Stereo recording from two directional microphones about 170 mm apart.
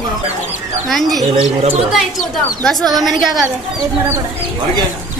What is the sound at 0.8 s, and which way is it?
Speech, centre (ahead or behind).